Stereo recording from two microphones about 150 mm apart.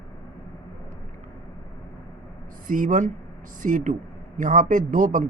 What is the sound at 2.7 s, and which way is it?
Speech, 60° right (ahead or behind).